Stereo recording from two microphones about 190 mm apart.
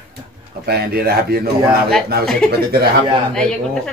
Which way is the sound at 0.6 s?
55° right (ahead or behind).